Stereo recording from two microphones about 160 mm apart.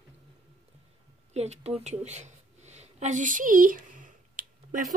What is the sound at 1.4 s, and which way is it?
A woman's voice, 40° right (ahead or behind).